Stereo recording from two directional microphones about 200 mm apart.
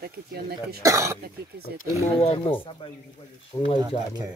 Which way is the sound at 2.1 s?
30° left (ahead or behind).